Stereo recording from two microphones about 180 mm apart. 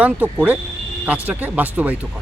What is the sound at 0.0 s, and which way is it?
A man's voice, 10° right (ahead or behind).